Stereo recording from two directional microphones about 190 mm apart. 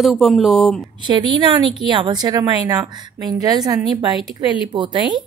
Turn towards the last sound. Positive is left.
turn(degrees=-25)  # may be behind; listen again after turning